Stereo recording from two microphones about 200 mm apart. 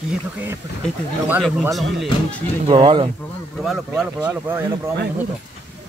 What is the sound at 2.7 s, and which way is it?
Speech, 25° right (ahead or behind).